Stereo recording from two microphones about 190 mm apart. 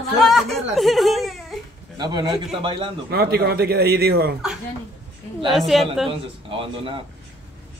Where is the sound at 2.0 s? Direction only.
20° right (ahead or behind).